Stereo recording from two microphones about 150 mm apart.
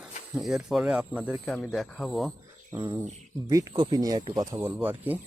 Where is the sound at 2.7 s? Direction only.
20° right (ahead or behind).